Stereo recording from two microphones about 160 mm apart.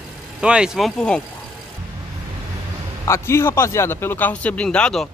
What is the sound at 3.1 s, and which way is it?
Speech, 15° left (ahead or behind).